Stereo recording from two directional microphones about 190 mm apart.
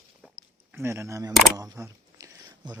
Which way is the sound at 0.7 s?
15° right (ahead or behind).